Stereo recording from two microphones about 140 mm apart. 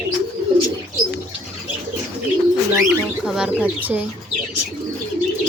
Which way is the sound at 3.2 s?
5° right (ahead or behind).